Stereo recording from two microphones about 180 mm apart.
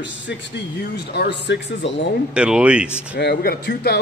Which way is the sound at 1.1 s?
70° left (ahead or behind).